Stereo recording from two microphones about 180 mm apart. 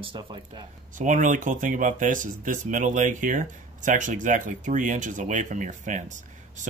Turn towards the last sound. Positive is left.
turn(degrees=-45)  # may be behind; listen again after turning